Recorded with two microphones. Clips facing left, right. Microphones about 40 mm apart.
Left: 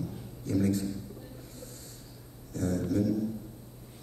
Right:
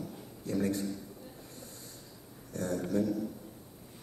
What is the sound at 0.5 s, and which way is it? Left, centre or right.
Speech, centre.